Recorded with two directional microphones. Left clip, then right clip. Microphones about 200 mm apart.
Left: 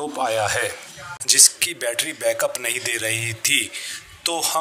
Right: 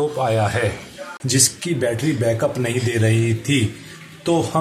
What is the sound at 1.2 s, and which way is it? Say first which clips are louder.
A man's voice: left 3 dB; 40° left (ahead or behind).